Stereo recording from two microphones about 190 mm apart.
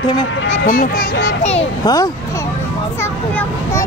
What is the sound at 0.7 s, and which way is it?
Speech, 50° left (ahead or behind).